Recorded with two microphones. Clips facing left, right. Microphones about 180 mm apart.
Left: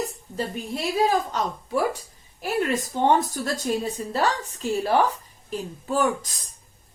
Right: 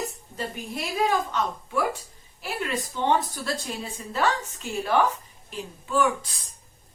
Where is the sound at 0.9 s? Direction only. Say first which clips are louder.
Left 2 dB; 35° left (ahead or behind).